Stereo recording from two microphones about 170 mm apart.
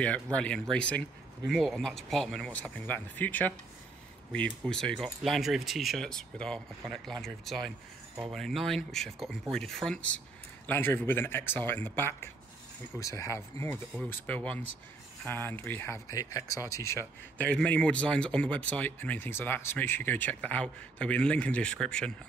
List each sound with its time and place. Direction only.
0.0 s speech: 5° left (ahead or behind)